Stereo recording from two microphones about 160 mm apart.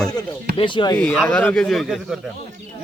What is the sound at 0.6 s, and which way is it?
Speech, 30° left (ahead or behind).